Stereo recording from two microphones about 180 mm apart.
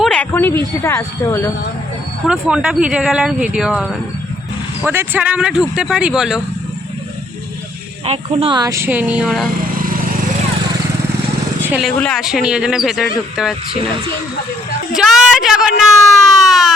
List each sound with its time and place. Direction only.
0.0 s a sound: 10° left (ahead or behind)
0.8 s speech: 15° left (ahead or behind)
2.2 s speech: 5° right (ahead or behind)
8.0 s speech: 35° right (ahead or behind); by 9.5 s centre (ahead or behind)
9.6 s lawn mower: 50° right (ahead or behind)
11.6 s vehicle: 10° right (ahead or behind)
11.9 s speech: 5° left (ahead or behind)
14.9 s speech: centre (ahead or behind)
16.5 s siren: centre (ahead or behind)